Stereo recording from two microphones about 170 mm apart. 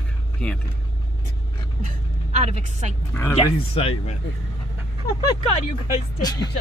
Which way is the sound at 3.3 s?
35° left (ahead or behind).